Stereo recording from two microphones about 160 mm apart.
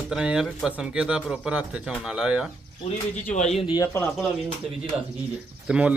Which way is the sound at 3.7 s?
20° left (ahead or behind).